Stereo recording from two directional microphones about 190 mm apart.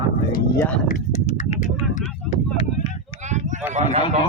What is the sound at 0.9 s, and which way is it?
Clip-clop, 40° left (ahead or behind).